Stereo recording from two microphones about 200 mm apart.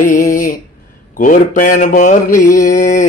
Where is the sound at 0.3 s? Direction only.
45° left (ahead or behind).